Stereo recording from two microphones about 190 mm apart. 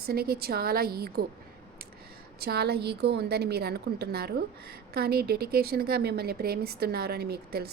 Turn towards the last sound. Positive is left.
turn(degrees=-55)  # may be behind; listen again after turning